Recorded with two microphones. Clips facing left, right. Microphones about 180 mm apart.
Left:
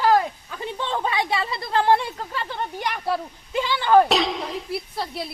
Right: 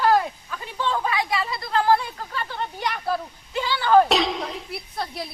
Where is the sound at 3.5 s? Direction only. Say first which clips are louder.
Left 1 dB; 20° left (ahead or behind).